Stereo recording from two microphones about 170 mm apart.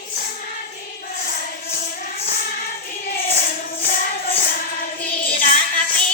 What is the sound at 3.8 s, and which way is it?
Music, 60° left (ahead or behind).